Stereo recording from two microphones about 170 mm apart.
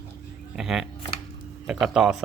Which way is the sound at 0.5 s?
5° right (ahead or behind).